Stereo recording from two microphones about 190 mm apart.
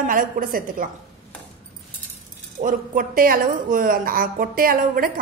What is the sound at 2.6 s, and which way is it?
A woman's voice, 45° right (ahead or behind).